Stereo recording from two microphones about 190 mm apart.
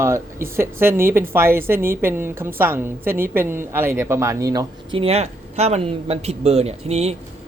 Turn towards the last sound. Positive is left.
turn(degrees=-35)  # may be behind; listen again after turning